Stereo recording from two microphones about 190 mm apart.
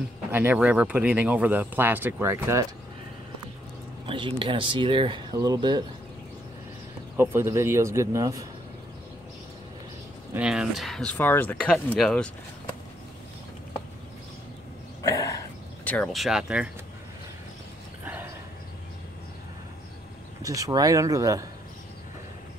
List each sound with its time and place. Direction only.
0.3 s speech: 10° right (ahead or behind)
4.0 s speech: 25° right (ahead or behind)
7.2 s speech: 15° right (ahead or behind)
10.3 s speech: 5° right (ahead or behind)
15.0 s a sound: 15° left (ahead or behind)
15.8 s speech: 5° left (ahead or behind)
20.4 s speech: 20° right (ahead or behind)